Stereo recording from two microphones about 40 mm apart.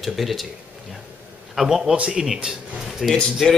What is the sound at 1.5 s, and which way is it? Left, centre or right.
Speech, centre.